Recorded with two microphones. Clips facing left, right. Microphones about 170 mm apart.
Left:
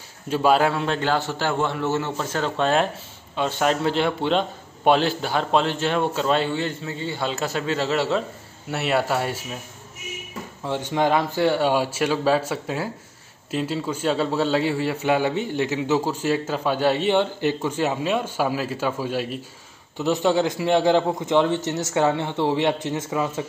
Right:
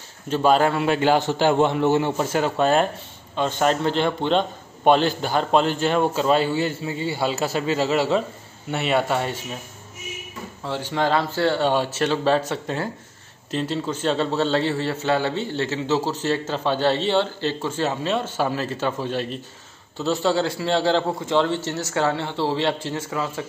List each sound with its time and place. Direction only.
0.3 s a man's voice: 5° left (ahead or behind)
10.6 s a man's voice: 20° left (ahead or behind)